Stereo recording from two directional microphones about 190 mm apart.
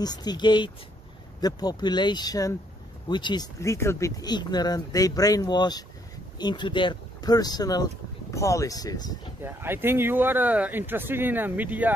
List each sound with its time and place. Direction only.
0.0 s speech: 20° left (ahead or behind)
9.4 s speech: 10° right (ahead or behind)